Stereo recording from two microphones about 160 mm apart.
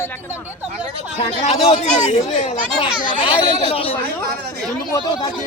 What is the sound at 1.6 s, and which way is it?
Speech, 40° left (ahead or behind).